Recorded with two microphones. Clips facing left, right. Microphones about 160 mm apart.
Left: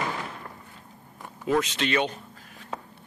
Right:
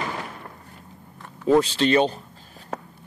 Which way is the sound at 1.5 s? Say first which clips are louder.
Right 7 dB; 30° right (ahead or behind).